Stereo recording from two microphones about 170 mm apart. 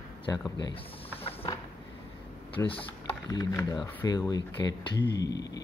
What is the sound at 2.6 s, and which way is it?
Speech, 30° left (ahead or behind).